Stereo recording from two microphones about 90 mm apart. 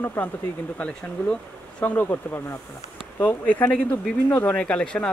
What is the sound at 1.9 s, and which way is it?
Speech, 25° left (ahead or behind).